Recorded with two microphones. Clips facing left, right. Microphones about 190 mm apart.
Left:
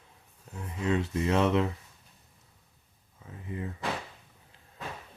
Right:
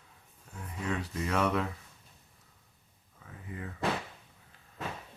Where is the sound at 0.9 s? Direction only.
25° left (ahead or behind).